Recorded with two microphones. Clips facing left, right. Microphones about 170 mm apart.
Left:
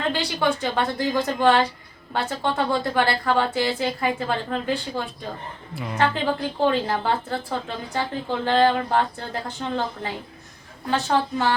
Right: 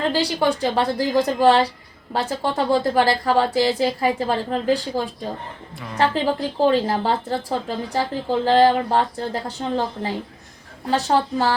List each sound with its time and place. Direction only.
0.1 s speech: 35° right (ahead or behind)
5.7 s a woman's voice: 5° left (ahead or behind)
6.0 s speech: 35° right (ahead or behind)